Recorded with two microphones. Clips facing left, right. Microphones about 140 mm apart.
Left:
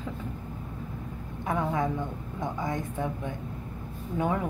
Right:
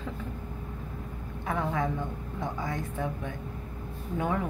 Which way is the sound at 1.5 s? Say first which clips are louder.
Left 2 dB; 20° left (ahead or behind).